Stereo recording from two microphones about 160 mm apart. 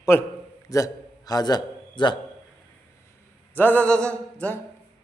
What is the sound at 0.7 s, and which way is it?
A man's voice, 20° left (ahead or behind).